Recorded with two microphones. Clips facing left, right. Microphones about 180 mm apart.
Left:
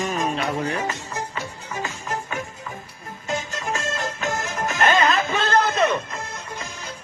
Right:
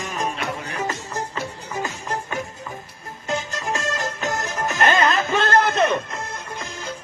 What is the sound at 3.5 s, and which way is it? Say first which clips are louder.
Music: right 1 dB; 40° right (ahead or behind).